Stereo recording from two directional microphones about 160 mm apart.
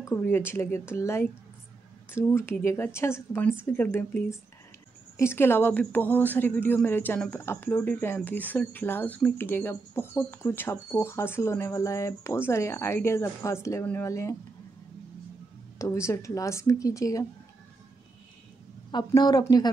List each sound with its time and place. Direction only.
0.0 s a woman's voice: 15° left (ahead or behind)
15.8 s a woman's voice: 20° left (ahead or behind)
18.9 s a woman's voice: 25° left (ahead or behind)